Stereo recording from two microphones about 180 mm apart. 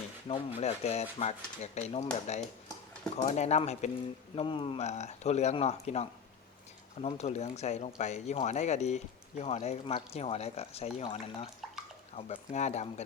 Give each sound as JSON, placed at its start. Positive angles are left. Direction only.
{"t": 0.3, "sound": "speech", "side_deg": 35}